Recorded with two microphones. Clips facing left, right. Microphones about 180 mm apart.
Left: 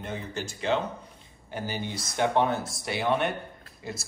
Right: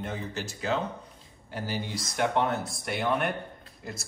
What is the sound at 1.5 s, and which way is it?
Speech, 25° left (ahead or behind).